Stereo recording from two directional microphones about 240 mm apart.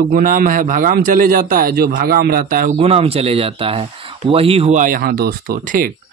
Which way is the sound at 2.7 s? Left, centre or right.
Right.